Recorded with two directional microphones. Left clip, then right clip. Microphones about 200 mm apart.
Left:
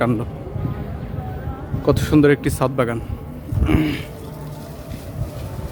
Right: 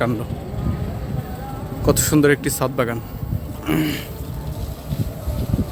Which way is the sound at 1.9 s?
10° left (ahead or behind).